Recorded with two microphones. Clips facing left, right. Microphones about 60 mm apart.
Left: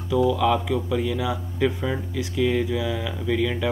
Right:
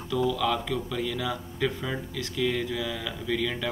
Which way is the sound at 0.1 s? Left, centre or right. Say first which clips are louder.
Left 6 dB; centre.